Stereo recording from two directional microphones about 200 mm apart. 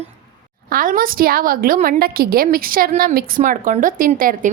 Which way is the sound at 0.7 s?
45° right (ahead or behind).